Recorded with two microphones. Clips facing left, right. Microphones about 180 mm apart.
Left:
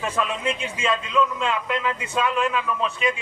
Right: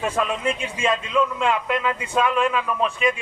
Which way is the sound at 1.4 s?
50° right (ahead or behind).